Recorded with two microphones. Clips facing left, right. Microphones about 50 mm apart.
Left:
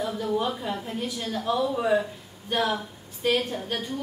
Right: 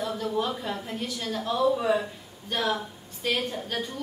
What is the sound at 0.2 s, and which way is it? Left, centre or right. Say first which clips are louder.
A woman's voice: left 2 dB; centre.